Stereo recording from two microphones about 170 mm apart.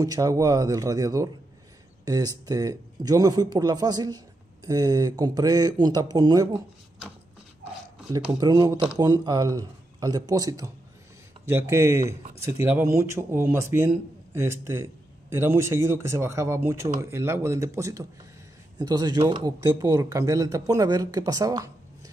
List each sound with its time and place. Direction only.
0.0 s speech: 20° right (ahead or behind)
8.1 s speech: 25° right (ahead or behind)